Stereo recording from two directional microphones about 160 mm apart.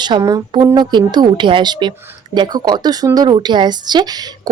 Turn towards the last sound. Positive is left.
turn(degrees=-25)  # may be behind; listen again after turning